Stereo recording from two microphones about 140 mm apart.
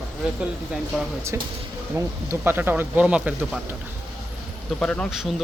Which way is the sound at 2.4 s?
15° right (ahead or behind).